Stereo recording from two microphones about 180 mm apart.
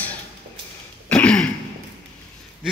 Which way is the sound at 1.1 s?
5° left (ahead or behind).